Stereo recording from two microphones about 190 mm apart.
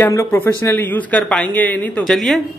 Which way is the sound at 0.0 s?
15° left (ahead or behind).